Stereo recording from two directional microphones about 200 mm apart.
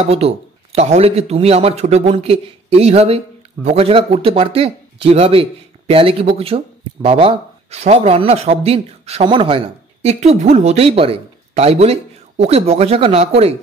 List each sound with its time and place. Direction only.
0.2 s speech: 30° right (ahead or behind)